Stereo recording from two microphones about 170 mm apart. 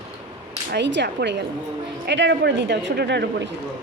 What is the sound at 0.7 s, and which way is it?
Speech, 90° right.